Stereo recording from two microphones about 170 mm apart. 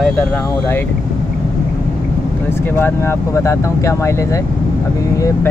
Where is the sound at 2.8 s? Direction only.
15° left (ahead or behind).